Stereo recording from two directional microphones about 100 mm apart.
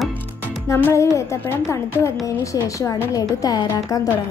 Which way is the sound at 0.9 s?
30° left (ahead or behind).